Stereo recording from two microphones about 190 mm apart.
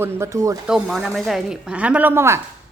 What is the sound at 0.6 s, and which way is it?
A woman's voice, centre (ahead or behind).